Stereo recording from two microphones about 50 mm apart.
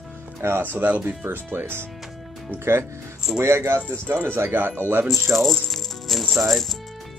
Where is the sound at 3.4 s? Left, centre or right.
Right.